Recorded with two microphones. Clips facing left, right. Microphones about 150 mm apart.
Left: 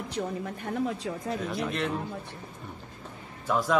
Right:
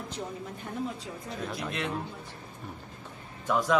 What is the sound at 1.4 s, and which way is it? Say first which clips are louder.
Speech: left 1 dB; centre (ahead or behind).